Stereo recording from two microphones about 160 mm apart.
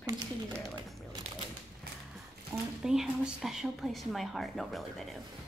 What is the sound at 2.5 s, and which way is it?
Speech, 15° right (ahead or behind).